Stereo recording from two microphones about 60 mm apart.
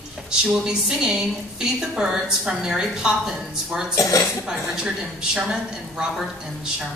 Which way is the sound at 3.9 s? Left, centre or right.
Left.